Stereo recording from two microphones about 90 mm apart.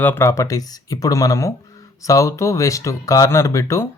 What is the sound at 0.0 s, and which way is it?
Speech, 25° left (ahead or behind).